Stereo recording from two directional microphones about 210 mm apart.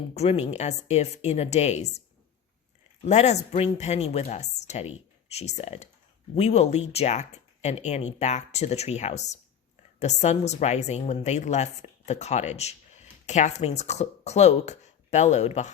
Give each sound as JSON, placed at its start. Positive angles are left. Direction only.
{"t": 0.1, "sound": "a woman's voice", "side_deg": 30}
{"t": 3.0, "sound": "a woman's voice", "side_deg": 30}